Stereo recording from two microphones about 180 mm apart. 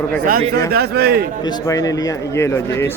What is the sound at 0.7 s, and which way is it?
Speech, 60° right (ahead or behind).